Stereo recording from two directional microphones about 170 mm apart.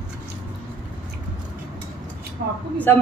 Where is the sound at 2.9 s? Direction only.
15° left (ahead or behind).